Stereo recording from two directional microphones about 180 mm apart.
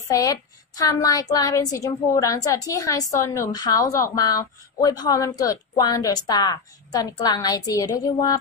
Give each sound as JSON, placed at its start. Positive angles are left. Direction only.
{"t": 0.1, "sound": "a woman's voice", "side_deg": 20}